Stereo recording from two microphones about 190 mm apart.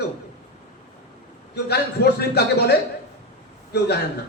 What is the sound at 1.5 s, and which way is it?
A man's voice, 60° left (ahead or behind).